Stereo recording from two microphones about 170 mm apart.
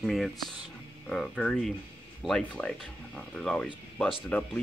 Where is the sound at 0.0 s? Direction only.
Centre (ahead or behind).